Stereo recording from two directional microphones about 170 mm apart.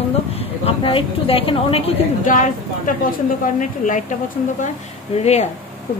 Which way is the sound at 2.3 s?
50° left (ahead or behind).